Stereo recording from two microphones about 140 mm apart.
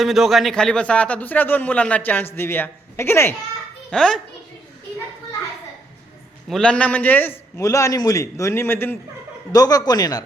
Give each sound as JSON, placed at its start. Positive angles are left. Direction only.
{"t": 0.0, "sound": "a man's voice", "side_deg": 0}
{"t": 3.8, "sound": "a child's voice", "side_deg": 5}
{"t": 6.5, "sound": "a man's voice", "side_deg": 5}
{"t": 9.5, "sound": "a man's voice", "side_deg": 25}